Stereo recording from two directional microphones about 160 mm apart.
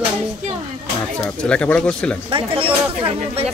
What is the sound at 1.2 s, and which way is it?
Speech, 5° left (ahead or behind).